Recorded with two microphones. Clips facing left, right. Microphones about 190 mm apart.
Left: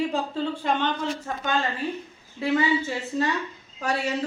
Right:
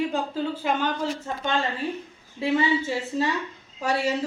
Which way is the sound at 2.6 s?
25° right (ahead or behind).